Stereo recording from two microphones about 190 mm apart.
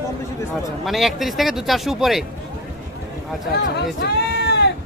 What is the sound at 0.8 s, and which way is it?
Speech, centre (ahead or behind).